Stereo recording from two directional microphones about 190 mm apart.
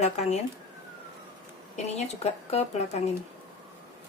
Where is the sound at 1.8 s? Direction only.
35° left (ahead or behind).